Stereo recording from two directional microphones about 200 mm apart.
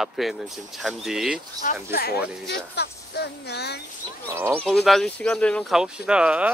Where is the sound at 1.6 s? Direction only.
45° left (ahead or behind).